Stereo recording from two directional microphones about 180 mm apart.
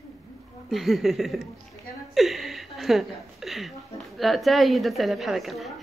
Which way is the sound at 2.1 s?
Centre (ahead or behind).